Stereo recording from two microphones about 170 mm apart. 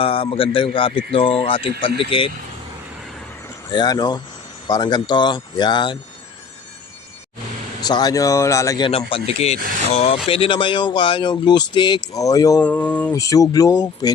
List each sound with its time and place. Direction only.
0.0 s speech: 30° left (ahead or behind)
3.7 s speech: 25° left (ahead or behind)
7.8 s speech: 25° left (ahead or behind)
8.9 s speech: 35° left (ahead or behind)
9.6 s speech: 55° right (ahead or behind)
9.9 s speech: 35° left (ahead or behind); by 12.6 s 20° left (ahead or behind)
12.6 s speech: 10° left (ahead or behind)
13.1 s speech: 20° left (ahead or behind)